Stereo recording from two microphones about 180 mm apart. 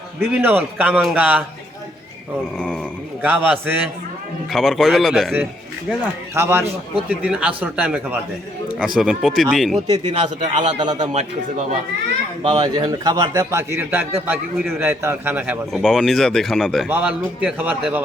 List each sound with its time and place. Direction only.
0.3 s a man's voice: 10° right (ahead or behind)
2.6 s speech: 5° right (ahead or behind)
5.9 s a man's voice: 15° right (ahead or behind)
10.1 s a man's voice: 40° right (ahead or behind)
10.8 s a man's voice: 25° right (ahead or behind)
11.1 s a man's voice: 40° right (ahead or behind)
12.4 s a man's voice: 25° right (ahead or behind); by 18.0 s 10° right (ahead or behind)